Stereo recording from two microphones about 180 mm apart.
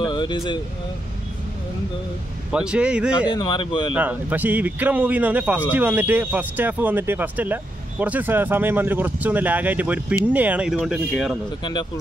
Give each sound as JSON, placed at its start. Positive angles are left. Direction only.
{"t": 0.1, "sound": "speech", "side_deg": 25}
{"t": 2.5, "sound": "speech", "side_deg": -5}
{"t": 3.3, "sound": "speech", "side_deg": 25}
{"t": 3.9, "sound": "a man's voice", "side_deg": -10}